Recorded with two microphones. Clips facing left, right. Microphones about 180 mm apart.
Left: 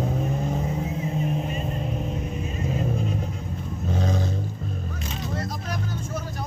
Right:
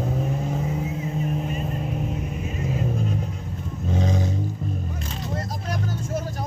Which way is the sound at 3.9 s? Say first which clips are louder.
Right 2 dB; 15° right (ahead or behind).